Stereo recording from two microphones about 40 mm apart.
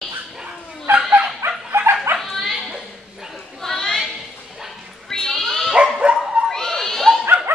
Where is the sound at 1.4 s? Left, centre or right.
Right.